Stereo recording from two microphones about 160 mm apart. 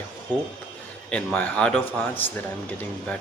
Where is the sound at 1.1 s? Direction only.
5° left (ahead or behind).